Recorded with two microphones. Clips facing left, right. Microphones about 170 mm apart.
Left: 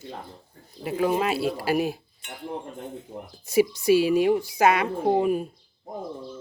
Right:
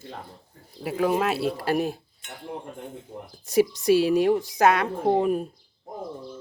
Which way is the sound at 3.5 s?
Centre (ahead or behind).